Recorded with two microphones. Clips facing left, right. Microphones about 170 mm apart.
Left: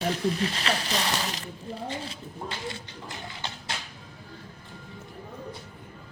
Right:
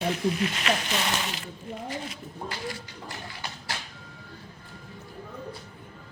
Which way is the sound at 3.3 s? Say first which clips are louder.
Even; 20° left (ahead or behind).